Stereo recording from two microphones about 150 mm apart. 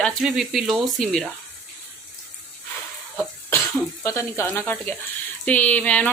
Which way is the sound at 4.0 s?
20° left (ahead or behind).